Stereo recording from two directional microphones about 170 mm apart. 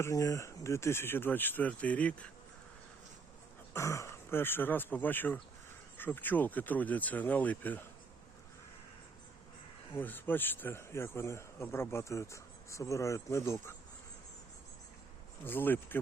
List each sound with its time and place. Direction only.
0.0 s speech: 20° left (ahead or behind)
3.8 s speech: 15° left (ahead or behind)
9.9 s speech: 10° left (ahead or behind)
15.4 s speech: 10° left (ahead or behind)